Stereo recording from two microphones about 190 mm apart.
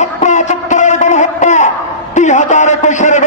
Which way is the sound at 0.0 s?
40° left (ahead or behind).